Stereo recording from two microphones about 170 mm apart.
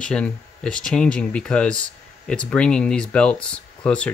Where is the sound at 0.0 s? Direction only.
5° left (ahead or behind).